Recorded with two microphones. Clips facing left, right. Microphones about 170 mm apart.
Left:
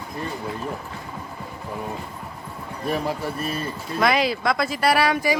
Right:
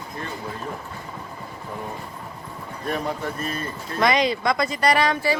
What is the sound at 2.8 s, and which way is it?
Speech, 5° left (ahead or behind).